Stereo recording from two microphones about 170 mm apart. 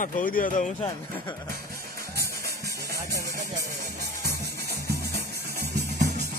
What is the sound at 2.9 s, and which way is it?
Music, 20° right (ahead or behind).